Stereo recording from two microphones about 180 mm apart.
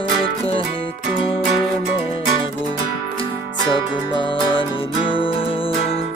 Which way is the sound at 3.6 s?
25° left (ahead or behind).